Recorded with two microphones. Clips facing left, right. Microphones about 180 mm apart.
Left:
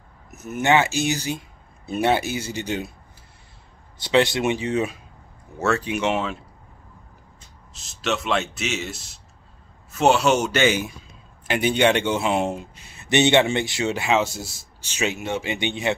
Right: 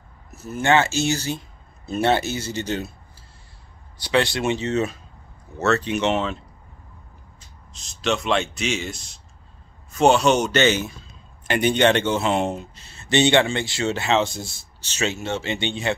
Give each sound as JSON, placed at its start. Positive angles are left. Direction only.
{"t": 0.3, "sound": "a man's voice", "side_deg": 20}
{"t": 4.0, "sound": "a man's voice", "side_deg": 20}
{"t": 7.7, "sound": "a man's voice", "side_deg": 5}